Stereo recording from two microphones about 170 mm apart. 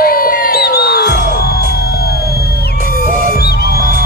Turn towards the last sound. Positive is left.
turn(degrees=-55)  # may be behind; listen again after turning